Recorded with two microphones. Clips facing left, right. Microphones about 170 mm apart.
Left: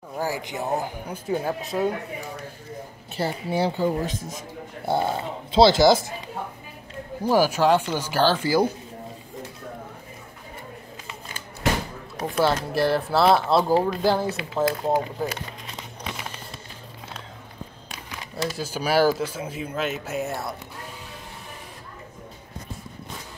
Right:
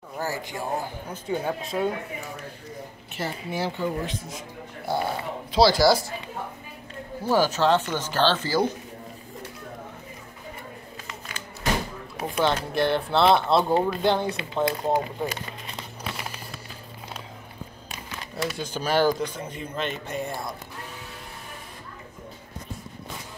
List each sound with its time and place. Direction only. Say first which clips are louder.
0.2 s speech: left 3 dB; 15° left (ahead or behind)
1.3 s speech: left 1 dB; centre (ahead or behind)
3.2 s speech: left 5 dB; 30° left (ahead or behind)
4.8 s speech: left 3 dB; 25° left (ahead or behind)
7.2 s speech: left 2 dB; 10° left (ahead or behind)
12.4 s speech: left 2 dB; 5° left (ahead or behind)
18.3 s speech: left 1 dB; 5° left (ahead or behind)